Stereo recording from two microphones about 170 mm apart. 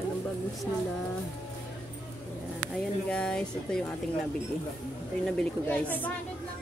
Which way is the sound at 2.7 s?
5° left (ahead or behind).